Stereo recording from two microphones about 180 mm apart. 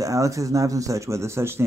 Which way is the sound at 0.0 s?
20° right (ahead or behind).